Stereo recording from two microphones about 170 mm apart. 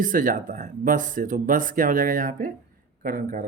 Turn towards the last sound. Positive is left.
turn(degrees=-55)  # may be behind; listen again after turning